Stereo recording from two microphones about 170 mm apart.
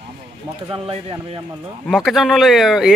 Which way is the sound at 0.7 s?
30° right (ahead or behind).